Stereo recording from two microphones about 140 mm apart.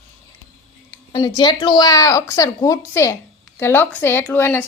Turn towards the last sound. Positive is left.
turn(degrees=15)  # may be behind; listen again after turning